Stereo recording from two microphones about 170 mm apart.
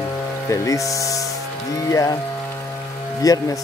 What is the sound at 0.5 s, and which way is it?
Speech, 20° left (ahead or behind).